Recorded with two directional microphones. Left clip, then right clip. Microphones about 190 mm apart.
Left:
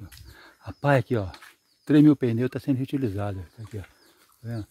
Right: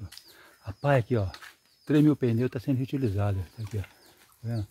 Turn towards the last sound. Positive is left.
turn(degrees=55)  # may be behind; listen again after turning